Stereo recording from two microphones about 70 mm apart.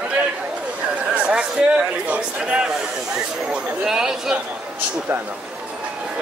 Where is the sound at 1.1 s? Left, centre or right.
Centre.